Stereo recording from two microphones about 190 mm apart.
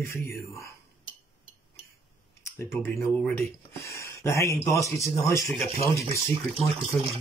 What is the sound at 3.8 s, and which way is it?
Speech, 15° left (ahead or behind).